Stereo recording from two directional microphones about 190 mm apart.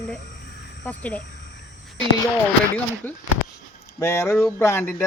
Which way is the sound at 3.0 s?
10° left (ahead or behind).